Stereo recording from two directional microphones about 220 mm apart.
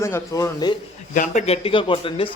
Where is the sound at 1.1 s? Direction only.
35° left (ahead or behind).